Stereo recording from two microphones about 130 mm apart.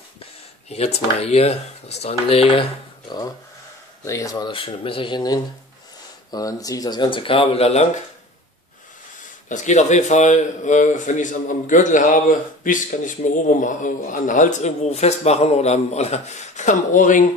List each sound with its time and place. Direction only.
0.2 s speech: 55° left (ahead or behind)
4.0 s speech: 25° left (ahead or behind)
4.5 s speech: 40° left (ahead or behind)
9.5 s speech: 65° left (ahead or behind); by 17.3 s 85° left